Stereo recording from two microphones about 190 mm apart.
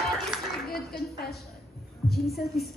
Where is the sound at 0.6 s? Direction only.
55° left (ahead or behind).